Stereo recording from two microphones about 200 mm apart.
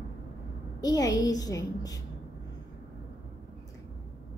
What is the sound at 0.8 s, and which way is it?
A woman's voice, 15° left (ahead or behind).